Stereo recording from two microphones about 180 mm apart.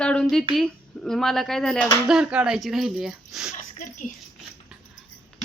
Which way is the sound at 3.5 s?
45° left (ahead or behind).